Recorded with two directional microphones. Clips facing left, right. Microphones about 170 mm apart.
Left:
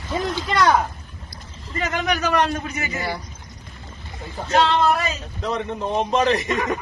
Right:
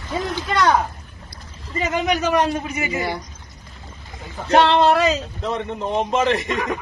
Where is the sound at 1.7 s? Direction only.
20° right (ahead or behind).